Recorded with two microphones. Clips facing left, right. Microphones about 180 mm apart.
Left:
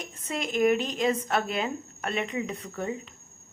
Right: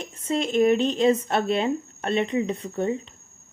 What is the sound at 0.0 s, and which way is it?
Speech, 25° right (ahead or behind).